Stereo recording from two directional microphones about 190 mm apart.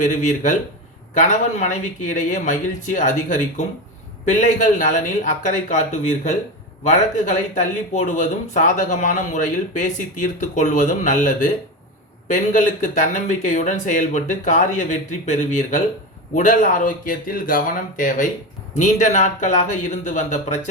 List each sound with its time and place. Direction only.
0.0 s speech: 40° left (ahead or behind)